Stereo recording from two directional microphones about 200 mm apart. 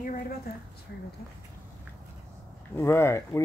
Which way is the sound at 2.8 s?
10° left (ahead or behind).